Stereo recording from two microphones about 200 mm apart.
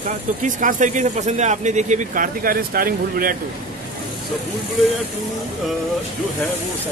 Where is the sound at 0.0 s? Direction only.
40° right (ahead or behind).